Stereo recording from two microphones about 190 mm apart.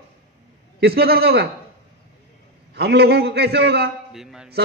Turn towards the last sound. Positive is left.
turn(degrees=-5)  # may be behind; listen again after turning